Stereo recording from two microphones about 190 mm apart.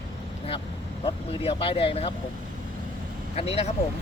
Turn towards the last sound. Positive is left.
turn(degrees=30)  # may be behind; listen again after turning